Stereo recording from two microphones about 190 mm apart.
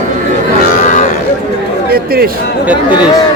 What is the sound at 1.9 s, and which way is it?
Chatter, 55° right (ahead or behind).